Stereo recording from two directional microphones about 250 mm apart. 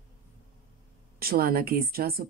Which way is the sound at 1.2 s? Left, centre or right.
Right.